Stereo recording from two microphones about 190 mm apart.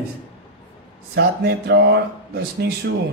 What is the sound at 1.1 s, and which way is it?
Speech, 60° right (ahead or behind).